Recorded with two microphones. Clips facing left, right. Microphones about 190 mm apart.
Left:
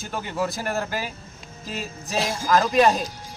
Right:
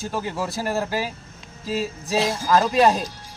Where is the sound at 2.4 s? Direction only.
10° right (ahead or behind).